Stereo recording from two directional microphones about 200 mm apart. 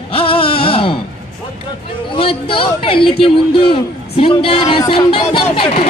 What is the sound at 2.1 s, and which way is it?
A man's voice, 25° left (ahead or behind).